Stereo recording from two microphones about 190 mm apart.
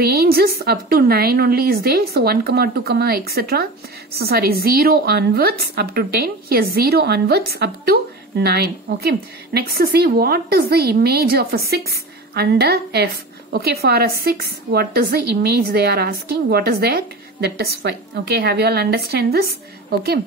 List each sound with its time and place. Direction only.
0.0 s a woman's voice: 55° right (ahead or behind)